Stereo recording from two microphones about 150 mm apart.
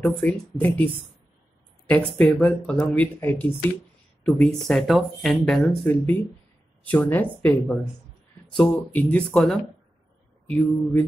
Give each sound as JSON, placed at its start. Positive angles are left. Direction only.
{"t": 0.0, "sound": "speech", "side_deg": 10}
{"t": 2.0, "sound": "speech", "side_deg": 5}